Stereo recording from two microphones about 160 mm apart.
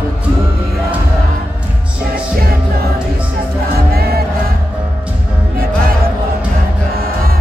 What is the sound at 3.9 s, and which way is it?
Music, 75° right (ahead or behind).